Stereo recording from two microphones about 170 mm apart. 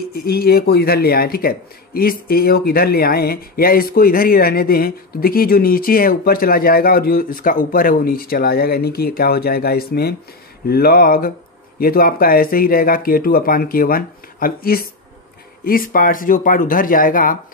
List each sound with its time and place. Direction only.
0.1 s speech: 65° left (ahead or behind)